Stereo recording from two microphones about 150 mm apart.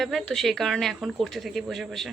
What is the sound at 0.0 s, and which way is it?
Speech, centre (ahead or behind).